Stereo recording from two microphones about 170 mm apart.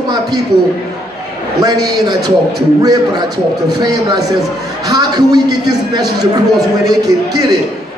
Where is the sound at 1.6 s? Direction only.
20° right (ahead or behind).